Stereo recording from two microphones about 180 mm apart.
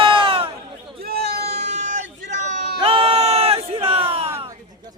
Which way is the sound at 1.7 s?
40° right (ahead or behind).